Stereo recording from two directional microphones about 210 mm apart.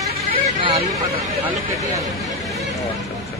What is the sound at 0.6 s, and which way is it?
Speech, 25° right (ahead or behind).